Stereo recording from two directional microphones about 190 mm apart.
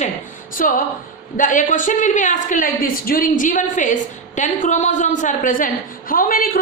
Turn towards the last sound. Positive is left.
turn(degrees=50)  # may be behind; listen again after turning